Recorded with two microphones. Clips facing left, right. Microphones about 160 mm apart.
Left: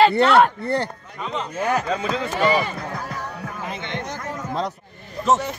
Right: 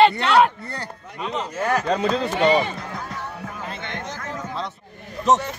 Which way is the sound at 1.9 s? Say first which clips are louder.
Right 3 dB; 70° right (ahead or behind).